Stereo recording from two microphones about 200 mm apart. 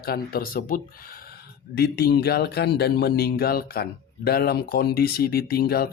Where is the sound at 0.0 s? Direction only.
50° left (ahead or behind).